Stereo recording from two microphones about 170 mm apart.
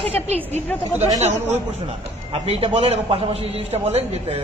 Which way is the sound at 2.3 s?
35° right (ahead or behind).